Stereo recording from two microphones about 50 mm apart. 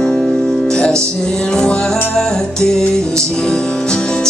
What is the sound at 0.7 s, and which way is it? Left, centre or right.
Music, centre.